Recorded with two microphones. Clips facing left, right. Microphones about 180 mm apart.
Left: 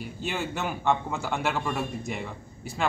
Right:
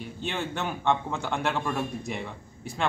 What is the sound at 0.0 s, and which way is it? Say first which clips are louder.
A man's voice: left 1 dB; 5° left (ahead or behind).